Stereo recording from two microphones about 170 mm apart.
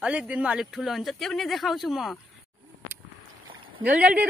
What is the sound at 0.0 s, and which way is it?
Speech, 5° right (ahead or behind).